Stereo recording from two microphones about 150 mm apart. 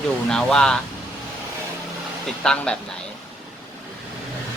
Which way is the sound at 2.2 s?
5° left (ahead or behind).